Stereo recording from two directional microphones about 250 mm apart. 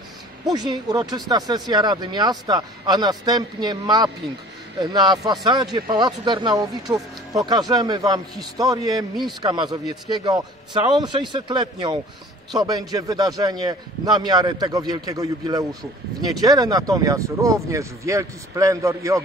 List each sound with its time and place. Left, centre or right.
0.5 s speech: centre